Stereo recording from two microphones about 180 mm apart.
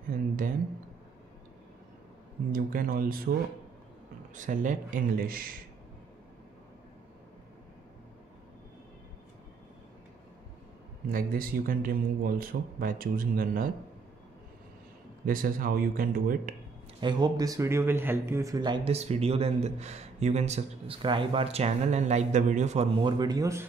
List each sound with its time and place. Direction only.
2.5 s a man's voice: 50° right (ahead or behind)
4.4 s a man's voice: 45° right (ahead or behind)
11.1 s a man's voice: 55° right (ahead or behind)
15.2 s a man's voice: 50° right (ahead or behind)
17.0 s speech: 25° right (ahead or behind); by 22.8 s 40° right (ahead or behind)
23.0 s speech: 20° right (ahead or behind)